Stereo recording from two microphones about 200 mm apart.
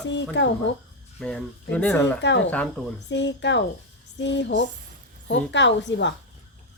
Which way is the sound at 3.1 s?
60° left (ahead or behind).